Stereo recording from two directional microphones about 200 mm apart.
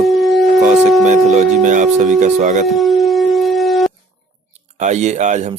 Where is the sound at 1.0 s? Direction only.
35° right (ahead or behind).